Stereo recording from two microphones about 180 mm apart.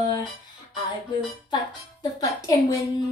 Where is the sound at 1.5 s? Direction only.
25° left (ahead or behind).